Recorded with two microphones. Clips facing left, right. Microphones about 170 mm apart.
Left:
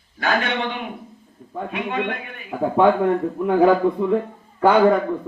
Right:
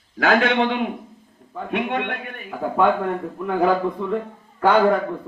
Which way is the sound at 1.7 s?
60° right (ahead or behind).